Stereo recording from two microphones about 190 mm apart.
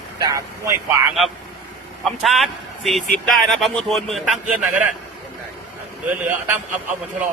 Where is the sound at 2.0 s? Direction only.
Centre (ahead or behind).